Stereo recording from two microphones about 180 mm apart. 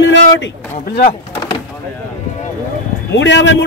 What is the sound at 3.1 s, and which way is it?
Speech, 80° left.